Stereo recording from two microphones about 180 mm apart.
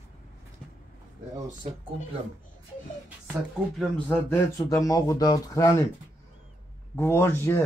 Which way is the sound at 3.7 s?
5° left (ahead or behind).